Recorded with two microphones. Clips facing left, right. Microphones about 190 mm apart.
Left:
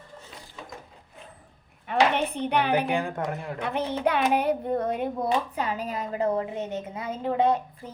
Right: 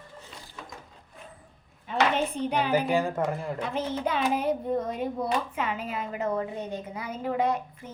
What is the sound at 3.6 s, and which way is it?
Speech, 65° left (ahead or behind).